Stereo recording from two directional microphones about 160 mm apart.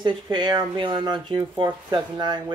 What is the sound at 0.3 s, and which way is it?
Speech, 30° right (ahead or behind).